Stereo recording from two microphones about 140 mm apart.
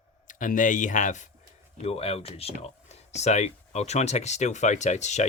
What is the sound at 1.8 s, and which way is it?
Speech, 45° left (ahead or behind).